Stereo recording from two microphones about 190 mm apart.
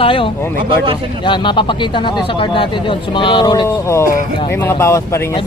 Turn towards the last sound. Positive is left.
turn(degrees=15)  # may be behind; listen again after turning